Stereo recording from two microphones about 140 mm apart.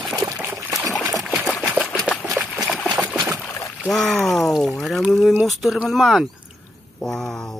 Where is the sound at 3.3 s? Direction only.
10° left (ahead or behind).